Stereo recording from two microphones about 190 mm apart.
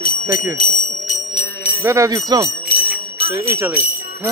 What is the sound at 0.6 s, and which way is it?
Music, 45° left (ahead or behind).